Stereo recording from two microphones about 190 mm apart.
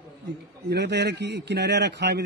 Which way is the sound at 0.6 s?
60° right (ahead or behind).